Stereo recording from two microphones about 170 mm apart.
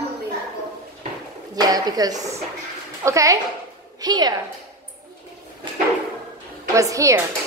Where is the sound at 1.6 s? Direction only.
20° right (ahead or behind).